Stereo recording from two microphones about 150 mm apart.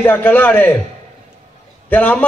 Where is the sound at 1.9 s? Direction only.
10° left (ahead or behind).